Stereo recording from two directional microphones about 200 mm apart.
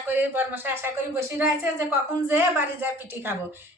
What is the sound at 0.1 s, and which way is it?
A woman's voice, 10° right (ahead or behind).